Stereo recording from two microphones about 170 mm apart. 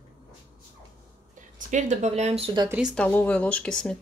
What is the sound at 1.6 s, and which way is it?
Speech, 45° right (ahead or behind).